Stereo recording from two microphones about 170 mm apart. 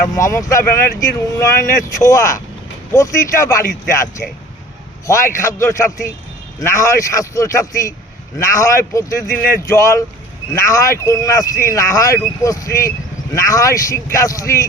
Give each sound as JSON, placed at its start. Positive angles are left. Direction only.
{"t": 0.1, "sound": "speech", "side_deg": 20}
{"t": 5.0, "sound": "speech", "side_deg": 15}